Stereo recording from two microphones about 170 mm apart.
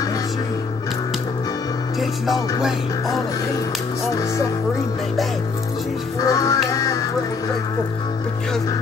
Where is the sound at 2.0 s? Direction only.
Centre (ahead or behind).